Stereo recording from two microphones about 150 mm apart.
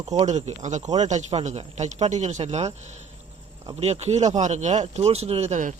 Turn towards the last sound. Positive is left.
turn(degrees=-55)  # may be behind; listen again after turning